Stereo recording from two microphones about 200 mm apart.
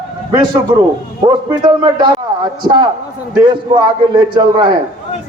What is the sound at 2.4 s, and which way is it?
A man's voice, 20° right (ahead or behind).